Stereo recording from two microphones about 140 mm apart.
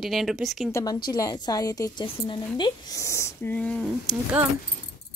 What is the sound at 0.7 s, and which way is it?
A woman's voice, 25° left (ahead or behind).